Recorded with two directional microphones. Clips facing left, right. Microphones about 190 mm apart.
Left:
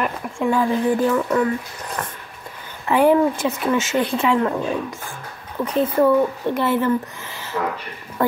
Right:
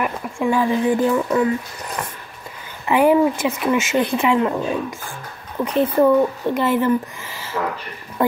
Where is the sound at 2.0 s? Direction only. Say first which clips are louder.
Right 1 dB; 10° right (ahead or behind).